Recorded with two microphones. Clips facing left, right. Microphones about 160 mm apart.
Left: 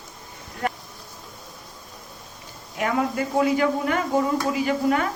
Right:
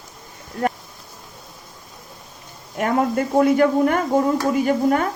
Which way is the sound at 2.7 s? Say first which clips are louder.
Right 4 dB; 45° right (ahead or behind).